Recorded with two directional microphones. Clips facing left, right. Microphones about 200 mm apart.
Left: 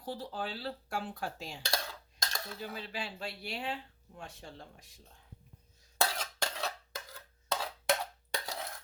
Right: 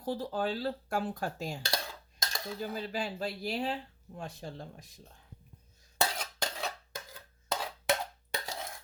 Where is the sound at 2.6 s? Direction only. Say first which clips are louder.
Right 7 dB; 45° right (ahead or behind).